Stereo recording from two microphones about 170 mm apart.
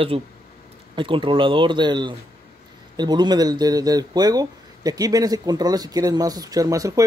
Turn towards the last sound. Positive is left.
turn(degrees=-20)  # may be behind; listen again after turning